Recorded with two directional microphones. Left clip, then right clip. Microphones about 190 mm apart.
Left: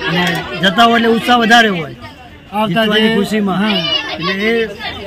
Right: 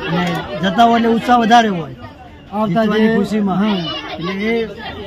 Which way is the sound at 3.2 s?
Centre (ahead or behind).